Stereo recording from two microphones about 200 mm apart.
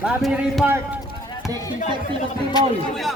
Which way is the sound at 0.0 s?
Centre (ahead or behind).